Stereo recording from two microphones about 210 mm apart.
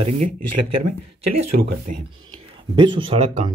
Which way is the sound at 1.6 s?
45° right (ahead or behind).